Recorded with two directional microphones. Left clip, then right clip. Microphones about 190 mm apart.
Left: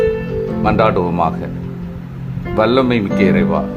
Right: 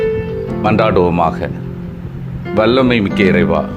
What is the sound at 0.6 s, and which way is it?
Speech, 15° right (ahead or behind).